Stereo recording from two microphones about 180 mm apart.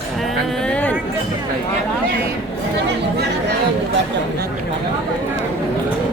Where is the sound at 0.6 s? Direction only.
5° left (ahead or behind).